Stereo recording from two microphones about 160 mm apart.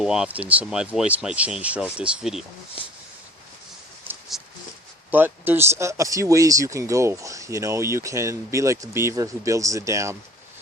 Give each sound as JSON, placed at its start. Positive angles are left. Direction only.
{"t": 0.0, "sound": "speech", "side_deg": -5}
{"t": 4.3, "sound": "a sound", "side_deg": 0}
{"t": 5.1, "sound": "speech", "side_deg": -15}